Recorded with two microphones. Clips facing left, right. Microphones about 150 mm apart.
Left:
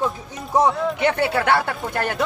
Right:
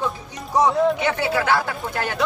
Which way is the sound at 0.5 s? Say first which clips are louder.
Right 1 dB; 55° left (ahead or behind).